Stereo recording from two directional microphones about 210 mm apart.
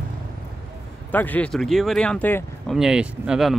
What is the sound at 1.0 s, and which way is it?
Speech, 10° left (ahead or behind).